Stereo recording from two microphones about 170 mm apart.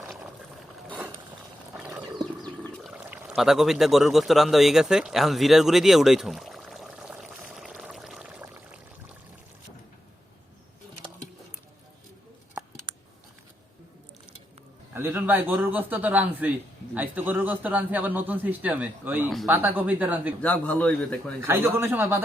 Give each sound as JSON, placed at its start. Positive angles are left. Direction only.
{"t": 0.9, "sound": "mechanisms", "side_deg": -10}
{"t": 1.9, "sound": "pigeon", "side_deg": -20}
{"t": 2.8, "sound": "pour", "side_deg": -5}
{"t": 12.9, "sound": "a sound", "side_deg": -30}
{"t": 14.9, "sound": "a man's voice", "side_deg": -15}
{"t": 20.4, "sound": "speech", "side_deg": 5}
{"t": 21.4, "sound": "a man's voice", "side_deg": -15}